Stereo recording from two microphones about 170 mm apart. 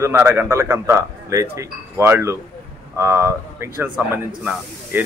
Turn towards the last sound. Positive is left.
turn(degrees=-10)  # may be behind; listen again after turning